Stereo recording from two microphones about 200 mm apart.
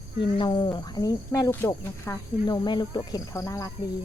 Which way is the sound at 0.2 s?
25° left (ahead or behind).